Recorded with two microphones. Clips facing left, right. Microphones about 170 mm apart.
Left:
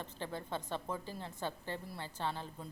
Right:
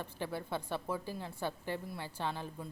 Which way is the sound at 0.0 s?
10° right (ahead or behind).